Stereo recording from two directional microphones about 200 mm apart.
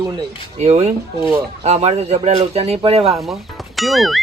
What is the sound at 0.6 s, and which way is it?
Speech, 30° right (ahead or behind).